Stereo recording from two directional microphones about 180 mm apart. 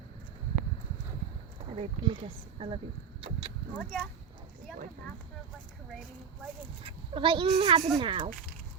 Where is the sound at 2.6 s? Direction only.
30° right (ahead or behind).